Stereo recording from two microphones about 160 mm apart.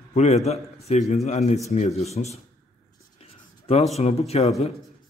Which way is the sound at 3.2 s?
40° left (ahead or behind).